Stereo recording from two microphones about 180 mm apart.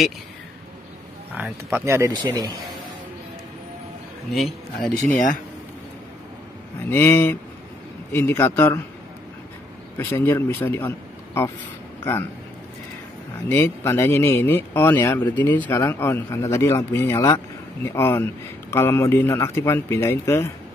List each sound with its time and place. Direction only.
1.3 s speech: 10° right (ahead or behind)
4.3 s a man's voice: centre (ahead or behind)
5.1 s speech: 45° left (ahead or behind)
6.9 s a man's voice: 10° left (ahead or behind)
10.1 s speech: 10° left (ahead or behind)
13.5 s a man's voice: 15° left (ahead or behind)